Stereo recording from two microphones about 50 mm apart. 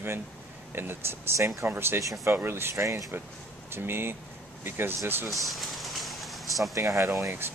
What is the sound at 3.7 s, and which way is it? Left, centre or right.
Speech, right.